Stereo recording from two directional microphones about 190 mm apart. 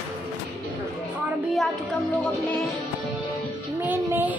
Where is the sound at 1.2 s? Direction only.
Centre (ahead or behind).